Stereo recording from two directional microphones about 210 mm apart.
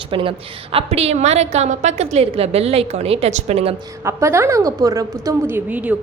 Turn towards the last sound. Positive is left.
turn(degrees=-5)  # may be behind; listen again after turning